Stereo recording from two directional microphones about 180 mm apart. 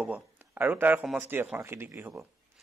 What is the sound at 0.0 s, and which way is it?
Speech, 10° right (ahead or behind).